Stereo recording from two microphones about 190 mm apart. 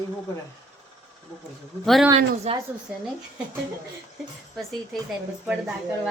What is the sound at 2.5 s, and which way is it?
Speech, 30° right (ahead or behind).